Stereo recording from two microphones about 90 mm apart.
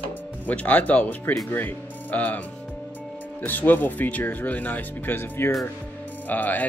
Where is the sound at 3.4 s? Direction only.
20° left (ahead or behind).